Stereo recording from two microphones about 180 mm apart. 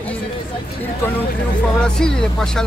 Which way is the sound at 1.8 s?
5° left (ahead or behind).